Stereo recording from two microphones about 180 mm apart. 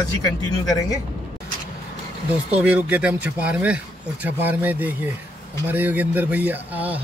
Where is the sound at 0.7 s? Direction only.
20° left (ahead or behind).